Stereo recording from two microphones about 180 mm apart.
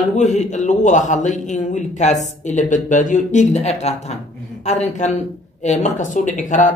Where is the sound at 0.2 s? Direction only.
40° left (ahead or behind).